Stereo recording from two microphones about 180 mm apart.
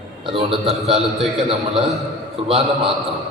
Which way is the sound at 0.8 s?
35° right (ahead or behind).